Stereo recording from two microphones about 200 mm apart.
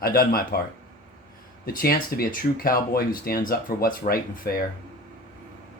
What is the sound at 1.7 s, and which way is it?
Speech, 45° left (ahead or behind).